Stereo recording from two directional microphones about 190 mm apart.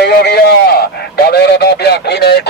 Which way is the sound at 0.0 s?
55° left (ahead or behind).